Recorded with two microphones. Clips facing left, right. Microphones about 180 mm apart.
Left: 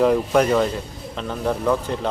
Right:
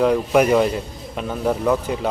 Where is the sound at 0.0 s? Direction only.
Centre (ahead or behind).